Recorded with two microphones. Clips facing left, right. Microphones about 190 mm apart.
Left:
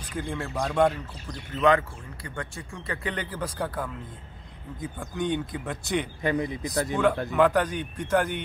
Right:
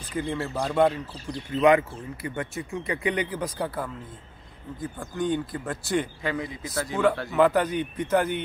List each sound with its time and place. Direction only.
0.1 s speech: 5° right (ahead or behind)
1.6 s speech: 15° right (ahead or behind); by 6.0 s centre (ahead or behind)
6.2 s speech: 20° left (ahead or behind)
7.2 s speech: 10° right (ahead or behind)